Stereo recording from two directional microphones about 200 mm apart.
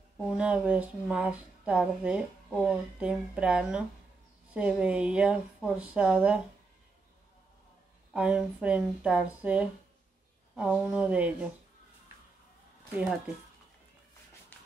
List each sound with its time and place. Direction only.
0.4 s speech: 5° right (ahead or behind)
8.1 s speech: 5° right (ahead or behind)